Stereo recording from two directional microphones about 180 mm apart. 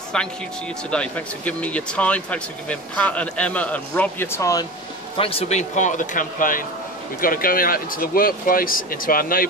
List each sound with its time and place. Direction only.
0.1 s speech: 5° left (ahead or behind)
5.1 s speech: 30° left (ahead or behind); by 9.5 s 55° left (ahead or behind)